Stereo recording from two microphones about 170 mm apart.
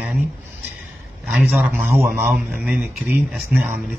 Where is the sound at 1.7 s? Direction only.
15° right (ahead or behind).